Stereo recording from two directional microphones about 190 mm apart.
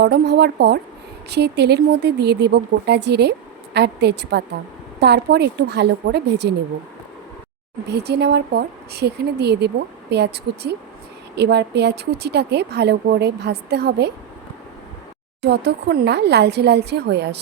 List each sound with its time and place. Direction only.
0.0 s speech: 60° right (ahead or behind)
7.9 s speech: 60° right (ahead or behind)
15.4 s speech: 60° right (ahead or behind)